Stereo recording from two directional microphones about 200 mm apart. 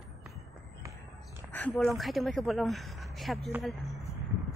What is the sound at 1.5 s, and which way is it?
A woman's voice, 10° left (ahead or behind).